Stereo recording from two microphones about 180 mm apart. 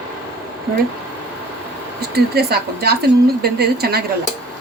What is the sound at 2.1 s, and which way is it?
A woman's voice, 60° right (ahead or behind).